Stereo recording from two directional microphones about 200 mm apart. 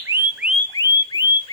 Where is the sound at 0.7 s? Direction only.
20° left (ahead or behind).